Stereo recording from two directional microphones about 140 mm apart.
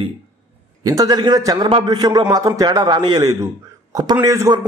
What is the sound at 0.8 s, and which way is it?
A man's voice, 25° right (ahead or behind).